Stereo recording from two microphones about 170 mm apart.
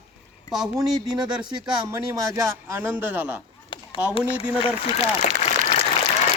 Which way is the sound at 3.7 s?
30° left (ahead or behind).